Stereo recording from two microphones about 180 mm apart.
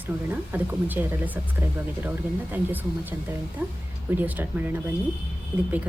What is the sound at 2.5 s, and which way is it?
Speech, 10° right (ahead or behind).